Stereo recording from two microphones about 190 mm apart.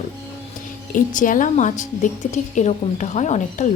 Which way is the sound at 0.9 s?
45° left (ahead or behind).